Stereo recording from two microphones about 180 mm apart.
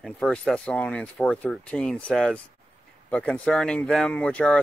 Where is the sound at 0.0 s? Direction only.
Centre (ahead or behind).